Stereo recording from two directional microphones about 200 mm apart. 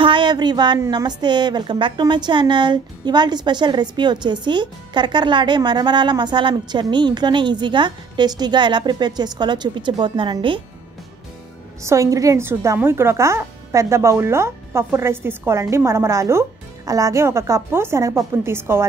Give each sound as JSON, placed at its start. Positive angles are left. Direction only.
{"t": 0.0, "sound": "a woman's voice", "side_deg": -25}
{"t": 11.8, "sound": "a woman's voice", "side_deg": -15}